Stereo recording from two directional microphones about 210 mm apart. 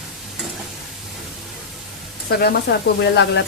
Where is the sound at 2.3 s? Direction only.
50° left (ahead or behind).